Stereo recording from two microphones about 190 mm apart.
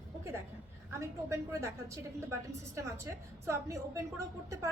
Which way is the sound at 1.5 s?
15° right (ahead or behind).